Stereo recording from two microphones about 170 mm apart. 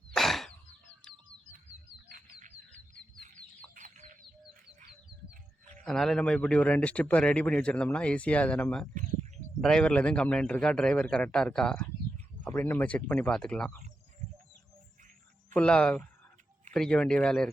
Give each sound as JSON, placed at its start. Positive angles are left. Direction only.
{"t": 0.1, "sound": "a sound", "side_deg": 0}
{"t": 2.0, "sound": "frog", "side_deg": -55}
{"t": 3.8, "sound": "chicken", "side_deg": -50}
{"t": 5.8, "sound": "a man's voice", "side_deg": 5}
{"t": 15.5, "sound": "a man's voice", "side_deg": 5}